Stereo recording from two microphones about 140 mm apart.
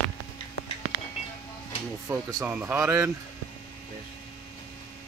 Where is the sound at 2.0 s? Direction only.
10° right (ahead or behind).